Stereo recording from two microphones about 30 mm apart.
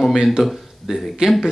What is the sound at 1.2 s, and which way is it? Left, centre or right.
Speech, right.